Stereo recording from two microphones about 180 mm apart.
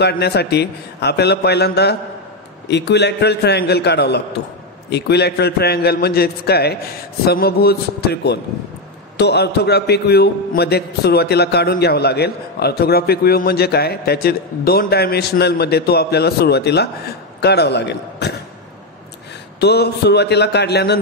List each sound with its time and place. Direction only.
0.0 s a man's voice: 65° left (ahead or behind)
19.6 s a man's voice: 65° left (ahead or behind)